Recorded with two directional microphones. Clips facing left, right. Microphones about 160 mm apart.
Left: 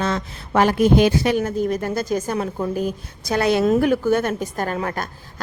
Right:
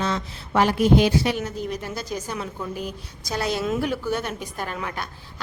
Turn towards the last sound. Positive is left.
turn(degrees=45)  # may be behind; listen again after turning